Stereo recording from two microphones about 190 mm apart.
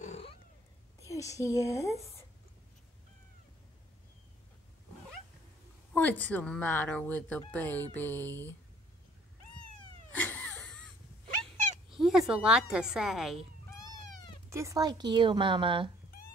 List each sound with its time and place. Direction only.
0.0 s cat: 35° left (ahead or behind)
1.0 s a woman's voice: 15° left (ahead or behind)
5.9 s a woman's voice: 10° left (ahead or behind)
10.1 s wheeze: 10° left (ahead or behind)
11.9 s a woman's voice: centre (ahead or behind)
14.5 s a woman's voice: 15° right (ahead or behind)